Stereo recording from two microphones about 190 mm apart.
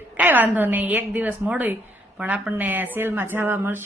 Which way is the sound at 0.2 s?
10° right (ahead or behind).